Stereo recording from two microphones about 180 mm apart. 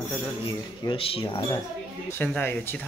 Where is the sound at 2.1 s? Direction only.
10° left (ahead or behind).